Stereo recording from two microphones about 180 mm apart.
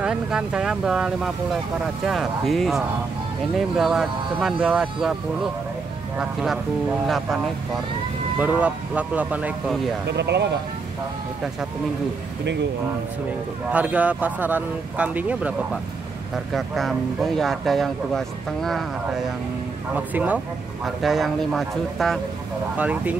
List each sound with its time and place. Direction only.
0.0 s speech: 5° right (ahead or behind)
8.4 s speech: 10° right (ahead or behind)
10.0 s speech: 70° right (ahead or behind)
13.7 s speech: 10° right (ahead or behind)
20.8 s speech: centre (ahead or behind)